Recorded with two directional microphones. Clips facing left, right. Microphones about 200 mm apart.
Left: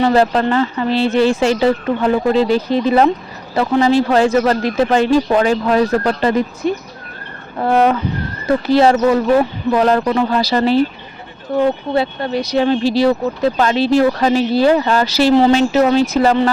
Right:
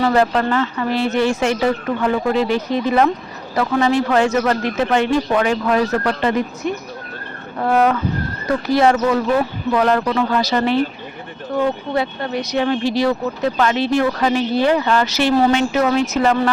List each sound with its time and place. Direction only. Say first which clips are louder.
0.0 s speech: left 3 dB; 30° left (ahead or behind)
11.9 s speech: left 3 dB; 30° left (ahead or behind)